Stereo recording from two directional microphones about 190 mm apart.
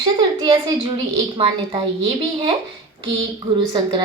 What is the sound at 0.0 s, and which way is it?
Speech, 20° right (ahead or behind).